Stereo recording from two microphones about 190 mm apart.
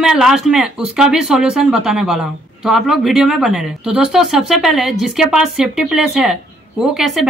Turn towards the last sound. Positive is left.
turn(degrees=0)  # may be behind; listen again after turning